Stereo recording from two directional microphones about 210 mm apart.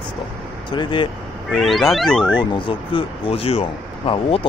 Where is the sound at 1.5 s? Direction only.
Centre (ahead or behind).